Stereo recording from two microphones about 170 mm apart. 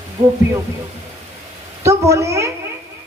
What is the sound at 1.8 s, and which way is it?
Speech, 15° right (ahead or behind).